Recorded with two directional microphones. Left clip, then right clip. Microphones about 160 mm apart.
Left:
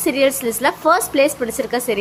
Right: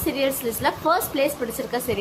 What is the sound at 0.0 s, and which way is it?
A woman's voice, 30° left (ahead or behind).